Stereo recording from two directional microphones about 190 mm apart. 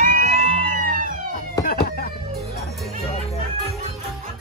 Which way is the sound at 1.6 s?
55° left (ahead or behind).